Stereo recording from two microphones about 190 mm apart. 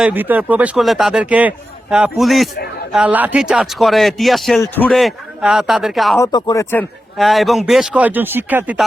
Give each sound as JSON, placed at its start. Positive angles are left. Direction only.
{"t": 0.0, "sound": "speech", "side_deg": -10}
{"t": 6.1, "sound": "speech", "side_deg": 20}
{"t": 7.2, "sound": "speech", "side_deg": 0}